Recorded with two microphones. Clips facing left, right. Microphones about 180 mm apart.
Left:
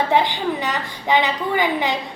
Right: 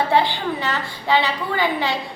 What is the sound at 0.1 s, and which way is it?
A woman's voice, 15° left (ahead or behind).